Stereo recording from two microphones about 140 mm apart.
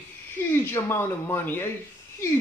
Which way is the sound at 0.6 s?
15° left (ahead or behind).